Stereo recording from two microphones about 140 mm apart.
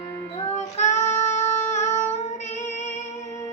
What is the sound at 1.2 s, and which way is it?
Music, 55° left (ahead or behind).